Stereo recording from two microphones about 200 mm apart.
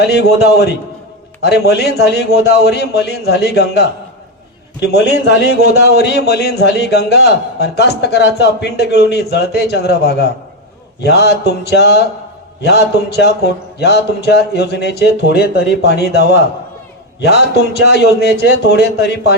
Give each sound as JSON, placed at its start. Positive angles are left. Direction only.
{"t": 0.0, "sound": "a man's voice", "side_deg": 55}